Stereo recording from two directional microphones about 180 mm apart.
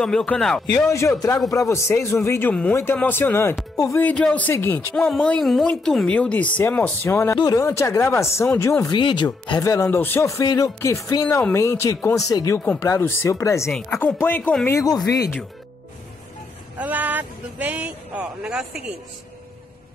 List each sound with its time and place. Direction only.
0.0 s speech: 5° left (ahead or behind)
0.7 s speech: 15° left (ahead or behind)
8.9 s speech: 25° left (ahead or behind)
13.7 s speech: 5° left (ahead or behind)
16.7 s speech: 10° right (ahead or behind)